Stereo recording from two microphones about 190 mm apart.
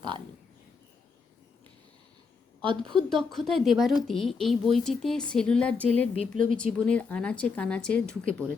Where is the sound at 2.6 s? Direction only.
25° right (ahead or behind).